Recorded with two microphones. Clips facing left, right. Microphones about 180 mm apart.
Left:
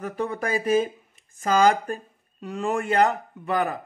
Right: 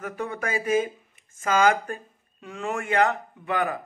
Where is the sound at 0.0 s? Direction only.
35° left (ahead or behind).